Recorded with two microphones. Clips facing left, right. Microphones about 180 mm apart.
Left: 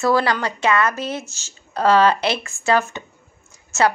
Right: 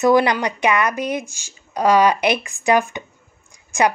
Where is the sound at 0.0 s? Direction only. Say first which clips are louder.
Right 3 dB; 20° right (ahead or behind).